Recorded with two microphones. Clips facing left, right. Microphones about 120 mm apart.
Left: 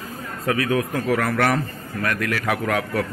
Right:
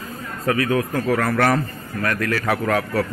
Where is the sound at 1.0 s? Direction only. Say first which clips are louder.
Right 2 dB; centre (ahead or behind).